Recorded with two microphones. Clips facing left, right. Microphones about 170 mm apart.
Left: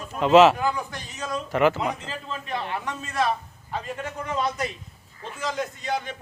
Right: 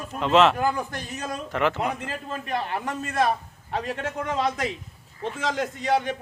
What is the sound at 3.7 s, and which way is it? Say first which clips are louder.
A man's voice: right 3 dB; 70° right (ahead or behind).